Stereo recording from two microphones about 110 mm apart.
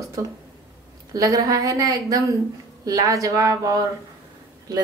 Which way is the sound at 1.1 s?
30° right (ahead or behind).